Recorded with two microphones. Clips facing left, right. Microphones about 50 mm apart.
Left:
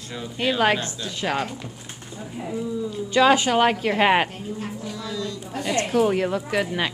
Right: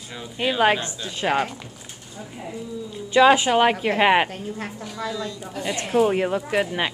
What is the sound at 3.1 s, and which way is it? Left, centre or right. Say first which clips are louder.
Speech: right 2 dB; right.